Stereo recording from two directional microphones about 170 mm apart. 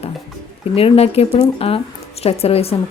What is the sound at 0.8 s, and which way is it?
A woman's voice, 35° left (ahead or behind).